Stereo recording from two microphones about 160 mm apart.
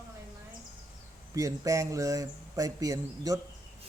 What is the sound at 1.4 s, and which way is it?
Speech, 20° right (ahead or behind).